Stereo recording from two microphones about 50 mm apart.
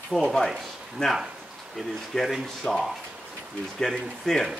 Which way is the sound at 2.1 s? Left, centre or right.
Centre.